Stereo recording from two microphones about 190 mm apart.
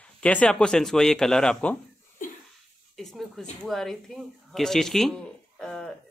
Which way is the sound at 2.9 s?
Centre (ahead or behind).